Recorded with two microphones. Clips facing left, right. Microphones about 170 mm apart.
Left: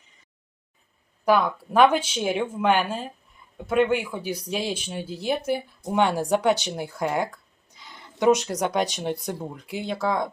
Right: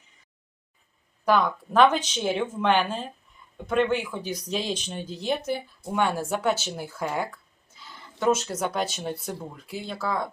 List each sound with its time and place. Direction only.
1.2 s speech: 10° left (ahead or behind)
7.8 s a sound: 15° left (ahead or behind)
8.8 s speech: 15° left (ahead or behind)